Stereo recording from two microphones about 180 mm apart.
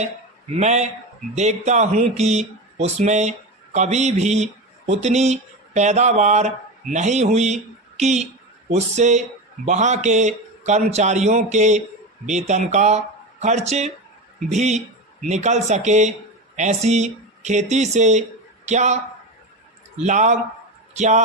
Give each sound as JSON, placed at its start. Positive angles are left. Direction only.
{"t": 0.5, "sound": "a man's voice", "side_deg": -40}
{"t": 20.0, "sound": "a man's voice", "side_deg": -40}